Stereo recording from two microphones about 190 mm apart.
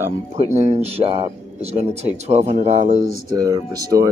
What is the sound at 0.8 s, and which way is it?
Speech, 30° right (ahead or behind).